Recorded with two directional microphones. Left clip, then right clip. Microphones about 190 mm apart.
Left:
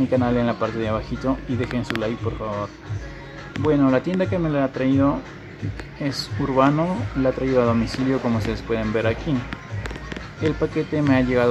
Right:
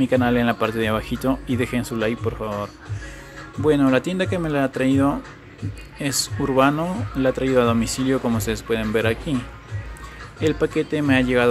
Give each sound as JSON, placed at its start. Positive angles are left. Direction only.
{"t": 0.1, "sound": "speech", "side_deg": -20}
{"t": 10.4, "sound": "speech", "side_deg": -15}